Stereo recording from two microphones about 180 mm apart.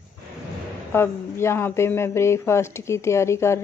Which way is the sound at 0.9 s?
15° left (ahead or behind).